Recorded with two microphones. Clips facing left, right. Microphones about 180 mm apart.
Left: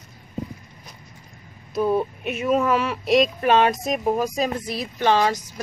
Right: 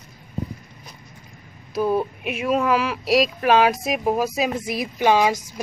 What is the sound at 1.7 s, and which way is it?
Speech, centre (ahead or behind).